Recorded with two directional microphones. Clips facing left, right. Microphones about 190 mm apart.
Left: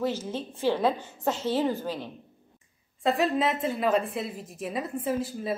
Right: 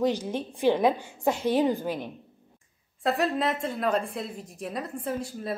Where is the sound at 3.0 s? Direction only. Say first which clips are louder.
Left 1 dB; centre (ahead or behind).